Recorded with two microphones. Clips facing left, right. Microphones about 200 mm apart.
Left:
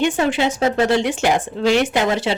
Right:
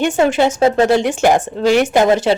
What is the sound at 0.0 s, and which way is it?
Speech, 45° right (ahead or behind).